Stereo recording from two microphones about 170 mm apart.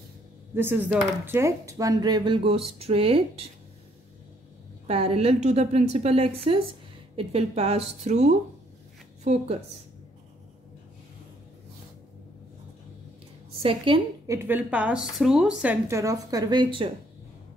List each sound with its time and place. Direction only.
0.6 s speech: 10° right (ahead or behind); by 3.4 s 35° right (ahead or behind)
4.8 s a woman's voice: 35° right (ahead or behind)
13.5 s a woman's voice: 35° right (ahead or behind)
14.2 s speech: 15° right (ahead or behind)